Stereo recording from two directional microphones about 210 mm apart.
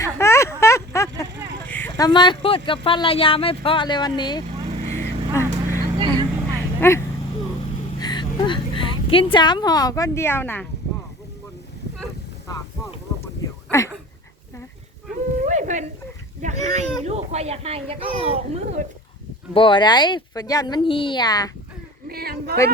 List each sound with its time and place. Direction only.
0.0 s a sound: 15° left (ahead or behind)
2.0 s speech: 20° left (ahead or behind)
4.4 s vehicle: 35° right (ahead or behind)
5.3 s vehicle: 10° right (ahead or behind)
6.0 s vehicle: 20° right (ahead or behind)
6.7 s speech: 10° left (ahead or behind)
7.9 s a sound: 20° left (ahead or behind)
12.5 s a sound: 15° left (ahead or behind)
15.4 s a sound: 35° right (ahead or behind)
16.4 s speech: 35° right (ahead or behind)
19.5 s speech: 25° left (ahead or behind)
22.1 s speech: 50° right (ahead or behind)